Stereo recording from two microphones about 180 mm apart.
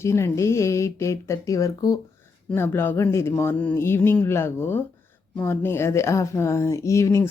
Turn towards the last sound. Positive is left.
turn(degrees=15)  # may be behind; listen again after turning